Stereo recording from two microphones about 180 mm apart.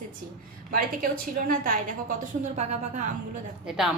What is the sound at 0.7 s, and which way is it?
A woman's voice, 50° right (ahead or behind).